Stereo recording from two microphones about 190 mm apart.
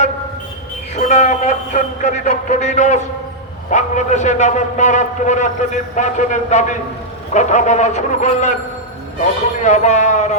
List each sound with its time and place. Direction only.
0.9 s a man's voice: 40° left (ahead or behind)
9.6 s a man's voice: 40° left (ahead or behind)